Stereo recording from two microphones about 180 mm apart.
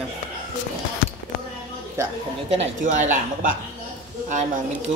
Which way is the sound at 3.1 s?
45° right (ahead or behind).